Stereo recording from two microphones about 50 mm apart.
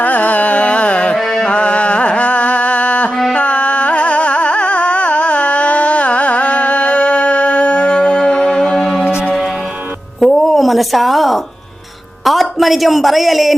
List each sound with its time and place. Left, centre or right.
0.0 s music: left
1.1 s music: centre
1.5 s music: left
10.2 s a sound: centre
12.2 s speech: centre